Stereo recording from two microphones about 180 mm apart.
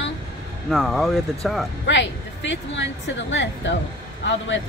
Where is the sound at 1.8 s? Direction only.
90° left.